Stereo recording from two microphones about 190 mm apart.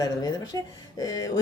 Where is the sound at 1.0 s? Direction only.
20° left (ahead or behind).